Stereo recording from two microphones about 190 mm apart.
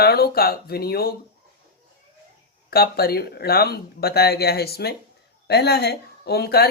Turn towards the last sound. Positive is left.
turn(degrees=55)  # may be behind; listen again after turning